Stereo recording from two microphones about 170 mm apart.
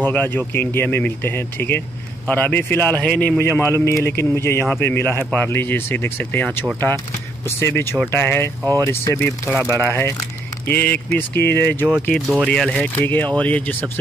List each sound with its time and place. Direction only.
0.0 s speech: 10° left (ahead or behind)
12.1 s speech: centre (ahead or behind)